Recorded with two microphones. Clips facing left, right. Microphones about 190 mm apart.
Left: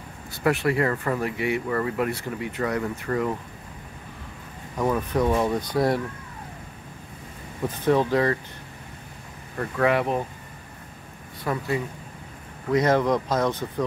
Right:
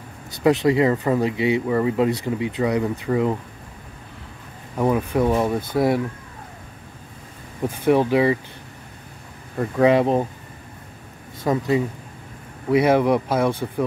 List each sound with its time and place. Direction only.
0.4 s speech: 20° right (ahead or behind)
4.7 s speech: 10° right (ahead or behind)
7.6 s speech: 10° right (ahead or behind)
9.6 s speech: 20° right (ahead or behind)
11.4 s speech: 20° right (ahead or behind)